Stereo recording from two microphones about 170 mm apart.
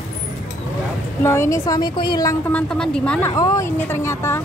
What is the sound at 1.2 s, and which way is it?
Speech, 15° left (ahead or behind).